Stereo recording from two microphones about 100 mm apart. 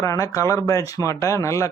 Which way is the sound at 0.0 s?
30° left (ahead or behind).